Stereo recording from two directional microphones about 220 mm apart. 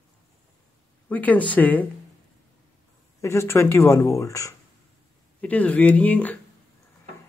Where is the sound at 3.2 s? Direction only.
10° left (ahead or behind).